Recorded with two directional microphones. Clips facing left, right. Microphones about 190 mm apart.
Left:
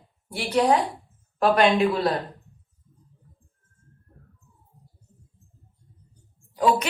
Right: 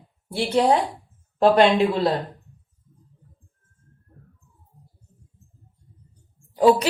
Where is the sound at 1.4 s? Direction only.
25° right (ahead or behind).